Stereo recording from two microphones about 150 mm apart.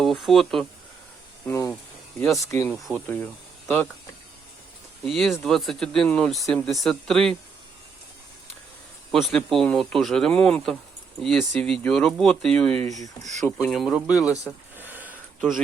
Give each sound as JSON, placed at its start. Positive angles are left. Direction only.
{"t": 0.0, "sound": "speech", "side_deg": 0}
{"t": 1.5, "sound": "speech", "side_deg": 20}
{"t": 1.7, "sound": "a sound", "side_deg": 5}
{"t": 2.4, "sound": "speech", "side_deg": 20}
{"t": 2.6, "sound": "speech", "side_deg": 0}
{"t": 5.0, "sound": "speech", "side_deg": 0}
{"t": 9.1, "sound": "speech", "side_deg": 0}
{"t": 13.0, "sound": "speech", "side_deg": -50}
{"t": 13.7, "sound": "speech", "side_deg": 0}
{"t": 14.8, "sound": "a sound", "side_deg": -10}